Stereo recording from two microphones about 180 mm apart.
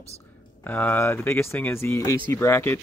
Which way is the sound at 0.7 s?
10° left (ahead or behind).